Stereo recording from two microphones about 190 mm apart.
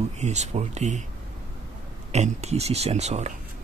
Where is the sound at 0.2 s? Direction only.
35° right (ahead or behind).